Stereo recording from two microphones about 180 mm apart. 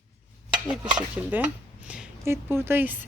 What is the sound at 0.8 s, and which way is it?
Stir, 25° right (ahead or behind).